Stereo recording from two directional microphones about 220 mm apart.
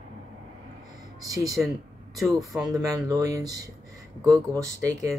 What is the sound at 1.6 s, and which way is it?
Speech, 5° right (ahead or behind).